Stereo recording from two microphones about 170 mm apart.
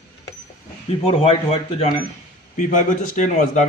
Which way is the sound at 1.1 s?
35° left (ahead or behind).